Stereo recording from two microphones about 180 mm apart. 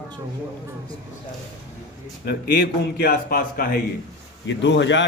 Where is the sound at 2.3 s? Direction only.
65° left (ahead or behind).